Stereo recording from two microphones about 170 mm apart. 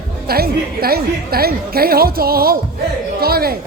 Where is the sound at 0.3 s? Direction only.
65° right (ahead or behind).